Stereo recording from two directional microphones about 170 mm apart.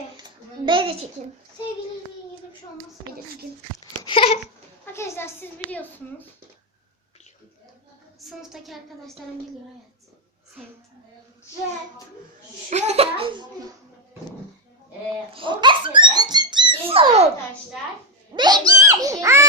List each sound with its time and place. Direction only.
0.2 s a sound: 30° right (ahead or behind)
4.0 s a sound: 35° left (ahead or behind)
4.9 s a child's voice: 15° left (ahead or behind)
8.2 s a woman's voice: centre (ahead or behind)
12.7 s a child's voice: 40° right (ahead or behind)
15.3 s a child's voice: 30° right (ahead or behind)
18.3 s speech: 25° right (ahead or behind)